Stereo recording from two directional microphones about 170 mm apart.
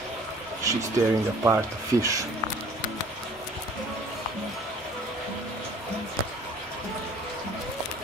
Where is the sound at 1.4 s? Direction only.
15° right (ahead or behind).